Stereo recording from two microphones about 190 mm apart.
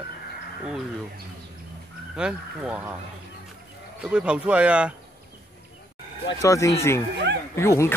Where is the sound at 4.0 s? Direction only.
5° right (ahead or behind).